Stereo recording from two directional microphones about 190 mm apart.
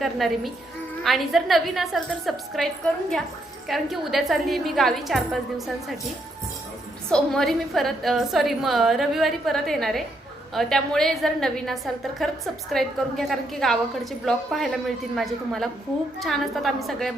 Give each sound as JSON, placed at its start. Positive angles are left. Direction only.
{"t": 0.0, "sound": "a woman's voice", "side_deg": 0}
{"t": 3.7, "sound": "a woman's voice", "side_deg": 0}
{"t": 7.1, "sound": "a woman's voice", "side_deg": 0}